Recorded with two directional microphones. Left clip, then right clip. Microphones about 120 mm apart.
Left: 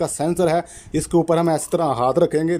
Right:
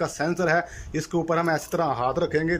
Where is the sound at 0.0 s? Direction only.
35° left (ahead or behind).